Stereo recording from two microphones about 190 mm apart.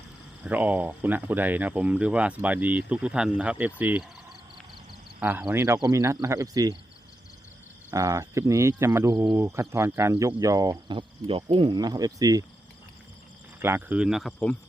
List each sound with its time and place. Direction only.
0.4 s speech: 10° right (ahead or behind)
5.2 s speech: 5° right (ahead or behind)
7.9 s speech: 15° right (ahead or behind)
13.6 s speech: 10° right (ahead or behind)